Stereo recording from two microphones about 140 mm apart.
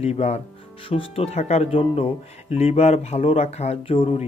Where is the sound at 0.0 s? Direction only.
50° left (ahead or behind).